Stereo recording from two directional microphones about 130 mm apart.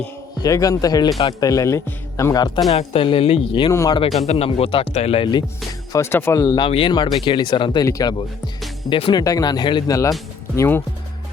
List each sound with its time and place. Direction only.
0.3 s speech: 30° left (ahead or behind)
2.6 s speech: 50° left (ahead or behind)
3.7 s speech: 25° left (ahead or behind)
4.3 s speech: 50° left (ahead or behind)
5.9 s speech: 20° left (ahead or behind)
6.6 s speech: 45° left (ahead or behind)
8.9 s speech: 45° left (ahead or behind)
9.1 s speech: 30° left (ahead or behind)